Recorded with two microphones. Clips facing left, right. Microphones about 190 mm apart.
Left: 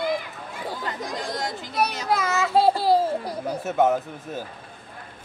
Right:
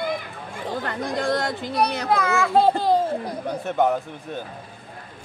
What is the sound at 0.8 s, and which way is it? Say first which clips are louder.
Speech: right 8 dB; 60° right (ahead or behind).